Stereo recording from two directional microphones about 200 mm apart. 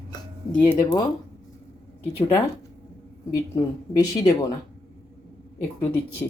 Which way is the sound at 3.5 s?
20° left (ahead or behind).